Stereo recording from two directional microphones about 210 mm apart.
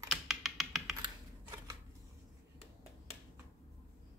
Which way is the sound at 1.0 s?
20° right (ahead or behind).